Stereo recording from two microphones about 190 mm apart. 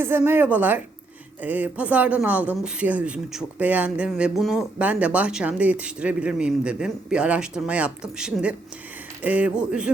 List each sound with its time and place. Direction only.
0.0 s speech: 10° right (ahead or behind)